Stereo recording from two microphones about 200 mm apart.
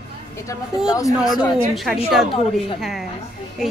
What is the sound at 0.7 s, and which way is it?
Speech, 5° right (ahead or behind).